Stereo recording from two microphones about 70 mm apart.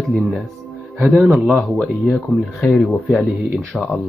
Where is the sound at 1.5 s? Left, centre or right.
Centre.